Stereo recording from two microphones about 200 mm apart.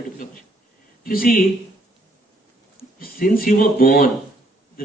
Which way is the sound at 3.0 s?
45° left (ahead or behind).